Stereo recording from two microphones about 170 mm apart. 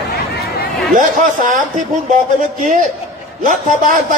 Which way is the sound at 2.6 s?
50° right (ahead or behind).